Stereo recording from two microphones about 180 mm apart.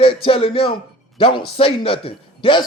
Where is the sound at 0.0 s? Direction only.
30° left (ahead or behind).